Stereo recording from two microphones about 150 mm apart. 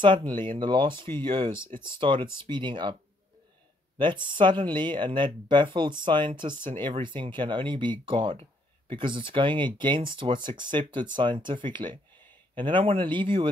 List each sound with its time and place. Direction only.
0.0 s speech: 30° right (ahead or behind)
4.0 s speech: 30° right (ahead or behind)